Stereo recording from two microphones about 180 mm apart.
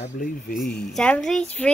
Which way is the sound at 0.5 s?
Centre (ahead or behind).